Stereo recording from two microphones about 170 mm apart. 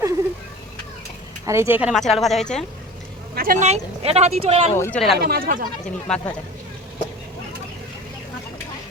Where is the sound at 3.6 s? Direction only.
40° right (ahead or behind).